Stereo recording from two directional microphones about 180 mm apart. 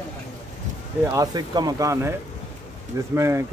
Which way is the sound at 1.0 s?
20° right (ahead or behind).